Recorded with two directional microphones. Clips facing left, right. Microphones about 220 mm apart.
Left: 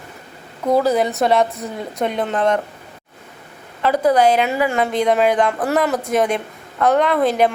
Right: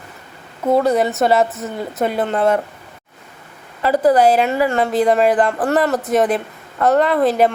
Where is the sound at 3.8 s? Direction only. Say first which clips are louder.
Right 2 dB; 5° right (ahead or behind).